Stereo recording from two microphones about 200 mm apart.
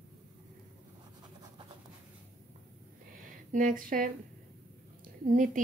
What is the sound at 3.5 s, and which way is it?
Speech, 40° right (ahead or behind).